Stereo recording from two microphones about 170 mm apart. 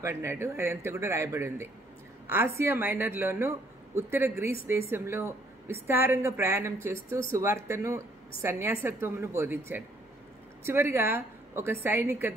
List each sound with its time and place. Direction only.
0.0 s speech: 15° right (ahead or behind)
10.6 s a woman's voice: 15° right (ahead or behind)